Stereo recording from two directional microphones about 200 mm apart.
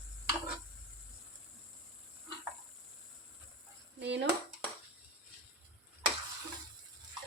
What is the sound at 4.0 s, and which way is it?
Dishes, 60° right (ahead or behind).